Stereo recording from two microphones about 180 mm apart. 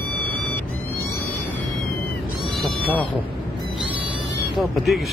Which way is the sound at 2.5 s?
10° left (ahead or behind).